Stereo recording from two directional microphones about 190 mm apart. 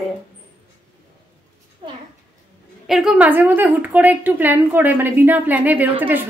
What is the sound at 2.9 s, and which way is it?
A woman's voice, 5° right (ahead or behind).